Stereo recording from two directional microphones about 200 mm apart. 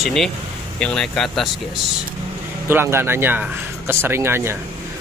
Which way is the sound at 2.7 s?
10° right (ahead or behind).